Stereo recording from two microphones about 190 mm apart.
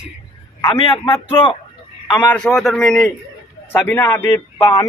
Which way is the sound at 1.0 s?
25° left (ahead or behind).